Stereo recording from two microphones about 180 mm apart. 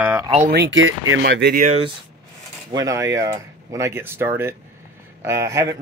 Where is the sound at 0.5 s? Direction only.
85° right.